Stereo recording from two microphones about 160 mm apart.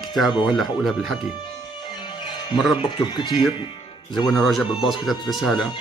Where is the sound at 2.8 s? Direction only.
30° left (ahead or behind).